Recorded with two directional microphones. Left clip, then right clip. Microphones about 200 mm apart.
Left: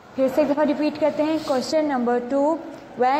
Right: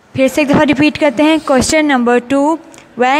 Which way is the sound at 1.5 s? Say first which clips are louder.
Right 10 dB; 90° right.